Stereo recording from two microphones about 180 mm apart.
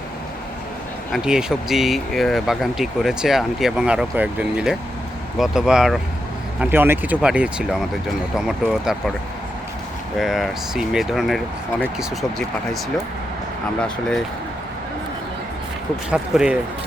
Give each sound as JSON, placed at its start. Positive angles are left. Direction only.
{"t": 1.1, "sound": "speech", "side_deg": -5}
{"t": 10.2, "sound": "speech", "side_deg": 0}
{"t": 16.0, "sound": "speech", "side_deg": -5}